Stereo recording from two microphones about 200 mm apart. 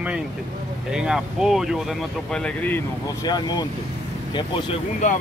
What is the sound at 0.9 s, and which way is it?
Speech, 5° right (ahead or behind).